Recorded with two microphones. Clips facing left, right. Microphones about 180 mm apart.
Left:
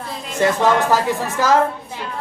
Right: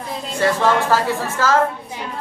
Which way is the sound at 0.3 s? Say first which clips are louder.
Left 1 dB; 20° left (ahead or behind).